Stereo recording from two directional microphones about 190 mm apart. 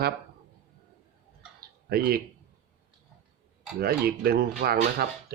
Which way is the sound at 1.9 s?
50° right (ahead or behind).